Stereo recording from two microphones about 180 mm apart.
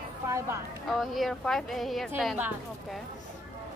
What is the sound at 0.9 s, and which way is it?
A woman's voice, centre (ahead or behind).